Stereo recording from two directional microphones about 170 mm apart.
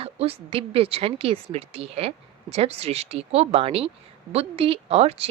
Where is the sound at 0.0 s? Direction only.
35° right (ahead or behind).